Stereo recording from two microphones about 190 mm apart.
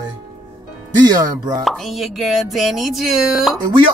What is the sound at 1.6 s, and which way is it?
Speech, centre (ahead or behind).